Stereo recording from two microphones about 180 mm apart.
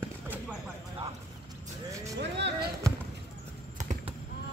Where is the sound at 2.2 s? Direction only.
75° right (ahead or behind).